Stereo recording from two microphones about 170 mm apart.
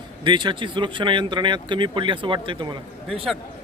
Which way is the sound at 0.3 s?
25° right (ahead or behind).